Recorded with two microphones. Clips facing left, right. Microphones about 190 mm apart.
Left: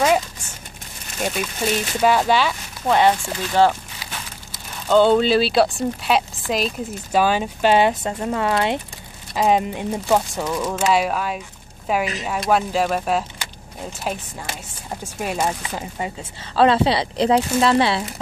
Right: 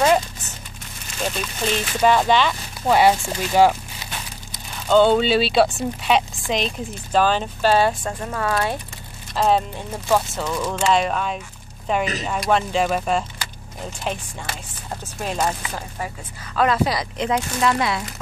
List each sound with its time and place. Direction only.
1.2 s speech: 10° left (ahead or behind)
2.9 s speech: 10° right (ahead or behind)
4.8 s a woman's voice: centre (ahead or behind); by 8.7 s 20° left (ahead or behind)
9.3 s a woman's voice: 10° left (ahead or behind)
16.5 s speech: 30° left (ahead or behind)